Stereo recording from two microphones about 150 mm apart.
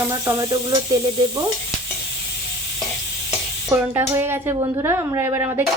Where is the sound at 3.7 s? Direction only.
15° right (ahead or behind).